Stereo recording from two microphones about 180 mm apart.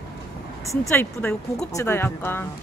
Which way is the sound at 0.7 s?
15° left (ahead or behind).